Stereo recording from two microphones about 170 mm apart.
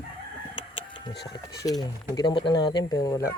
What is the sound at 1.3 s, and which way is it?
Speech, 20° left (ahead or behind).